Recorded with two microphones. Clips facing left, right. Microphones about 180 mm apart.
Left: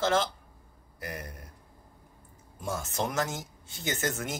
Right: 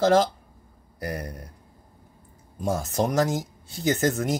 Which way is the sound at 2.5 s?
35° right (ahead or behind).